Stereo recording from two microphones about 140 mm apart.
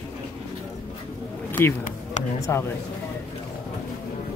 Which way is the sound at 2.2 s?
55° left (ahead or behind).